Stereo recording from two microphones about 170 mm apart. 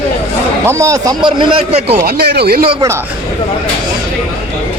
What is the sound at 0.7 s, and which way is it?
Speech, 20° right (ahead or behind).